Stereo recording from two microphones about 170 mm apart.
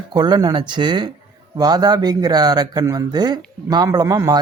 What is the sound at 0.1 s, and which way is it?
Speech, 25° right (ahead or behind).